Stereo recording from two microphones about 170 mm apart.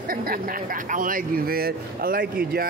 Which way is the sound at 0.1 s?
60° right (ahead or behind).